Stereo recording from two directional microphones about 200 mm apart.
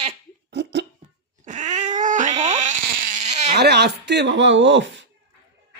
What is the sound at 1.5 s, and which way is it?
Cat, 35° right (ahead or behind).